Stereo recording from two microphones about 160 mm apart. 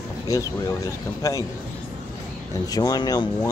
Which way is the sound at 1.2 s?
20° left (ahead or behind).